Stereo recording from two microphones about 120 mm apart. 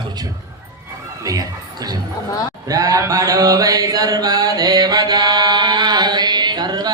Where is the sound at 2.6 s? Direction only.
30° right (ahead or behind).